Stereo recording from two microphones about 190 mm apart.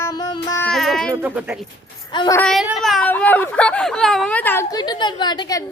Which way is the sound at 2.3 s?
Centre (ahead or behind).